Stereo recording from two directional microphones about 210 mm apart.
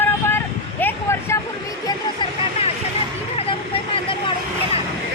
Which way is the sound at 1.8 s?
25° left (ahead or behind).